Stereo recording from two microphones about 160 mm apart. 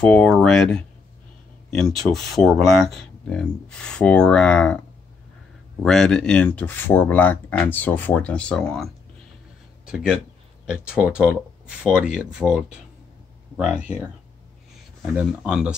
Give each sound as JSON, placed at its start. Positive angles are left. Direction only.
{"t": 0.0, "sound": "speech", "side_deg": 5}
{"t": 2.0, "sound": "speech", "side_deg": 0}
{"t": 5.8, "sound": "speech", "side_deg": 5}
{"t": 9.8, "sound": "speech", "side_deg": -5}